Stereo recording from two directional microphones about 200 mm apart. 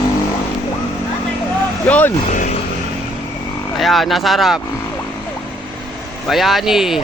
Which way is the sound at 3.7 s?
Centre (ahead or behind).